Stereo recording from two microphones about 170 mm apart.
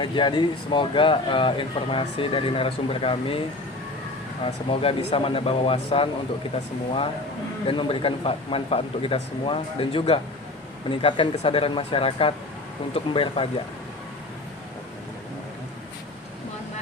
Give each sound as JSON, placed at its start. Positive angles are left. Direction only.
{"t": 0.0, "sound": "speech", "side_deg": 25}
{"t": 4.7, "sound": "speech", "side_deg": 35}
{"t": 7.7, "sound": "speech", "side_deg": 30}